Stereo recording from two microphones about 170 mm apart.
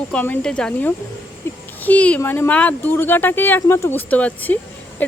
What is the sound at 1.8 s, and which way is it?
Speech, 10° left (ahead or behind).